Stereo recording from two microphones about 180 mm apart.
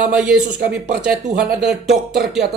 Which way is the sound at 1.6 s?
Centre (ahead or behind).